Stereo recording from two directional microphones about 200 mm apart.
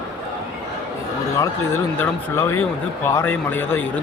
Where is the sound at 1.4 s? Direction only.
10° left (ahead or behind).